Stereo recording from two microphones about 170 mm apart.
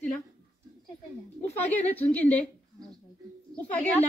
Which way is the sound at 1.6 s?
10° left (ahead or behind).